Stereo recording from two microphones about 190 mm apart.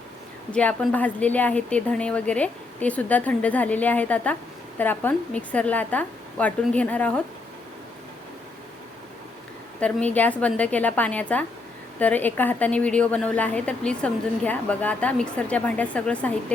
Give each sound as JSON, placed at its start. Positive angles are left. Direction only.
{"t": 0.5, "sound": "a woman's voice", "side_deg": 5}
{"t": 9.8, "sound": "a woman's voice", "side_deg": 5}